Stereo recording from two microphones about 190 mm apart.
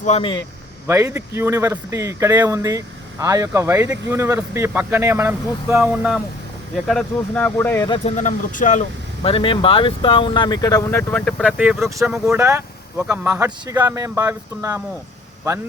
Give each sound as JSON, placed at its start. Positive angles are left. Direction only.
{"t": 0.0, "sound": "speech", "side_deg": 30}
{"t": 0.9, "sound": "speech", "side_deg": -15}
{"t": 6.8, "sound": "speech", "side_deg": 5}
{"t": 7.9, "sound": "speech", "side_deg": 30}
{"t": 9.2, "sound": "speech", "side_deg": 30}
{"t": 11.1, "sound": "speech", "side_deg": 5}
{"t": 11.9, "sound": "speech", "side_deg": -15}
{"t": 12.1, "sound": "speech", "side_deg": -5}